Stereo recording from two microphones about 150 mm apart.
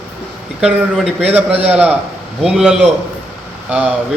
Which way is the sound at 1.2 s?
10° right (ahead or behind).